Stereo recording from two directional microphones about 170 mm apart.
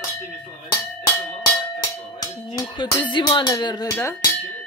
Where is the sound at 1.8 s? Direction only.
20° left (ahead or behind).